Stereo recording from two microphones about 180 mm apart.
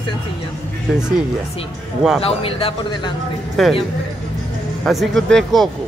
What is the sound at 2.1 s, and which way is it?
Speech, 30° left (ahead or behind).